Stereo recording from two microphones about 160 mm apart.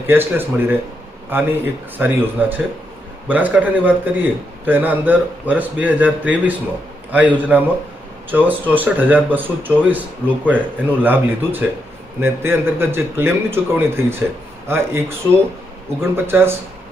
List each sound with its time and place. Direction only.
0.1 s speech: 15° right (ahead or behind)